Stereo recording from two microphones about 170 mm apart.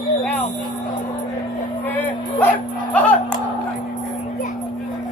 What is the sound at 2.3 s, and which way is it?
Music, 10° left (ahead or behind).